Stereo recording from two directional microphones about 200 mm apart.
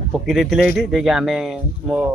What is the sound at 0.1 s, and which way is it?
Speech, centre (ahead or behind).